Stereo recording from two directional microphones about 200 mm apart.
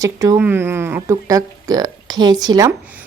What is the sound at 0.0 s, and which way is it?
A woman's voice, 15° right (ahead or behind).